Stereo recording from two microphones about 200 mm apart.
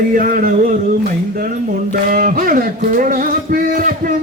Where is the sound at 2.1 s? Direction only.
45° right (ahead or behind).